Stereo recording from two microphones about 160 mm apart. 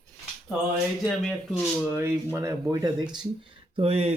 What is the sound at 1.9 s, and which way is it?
Speech, 15° right (ahead or behind).